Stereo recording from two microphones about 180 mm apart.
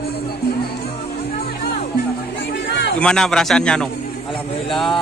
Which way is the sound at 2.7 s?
70° left (ahead or behind).